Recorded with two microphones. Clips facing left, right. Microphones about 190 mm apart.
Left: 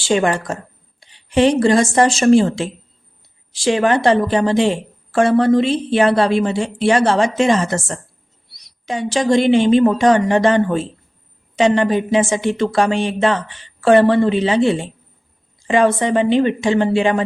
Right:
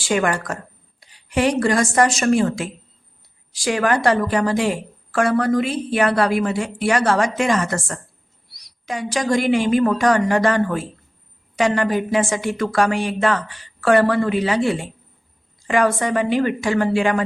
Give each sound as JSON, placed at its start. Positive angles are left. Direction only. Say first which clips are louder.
{"t": 0.0, "sound": "a woman's voice", "louder": "left 3 dB", "side_deg": 25}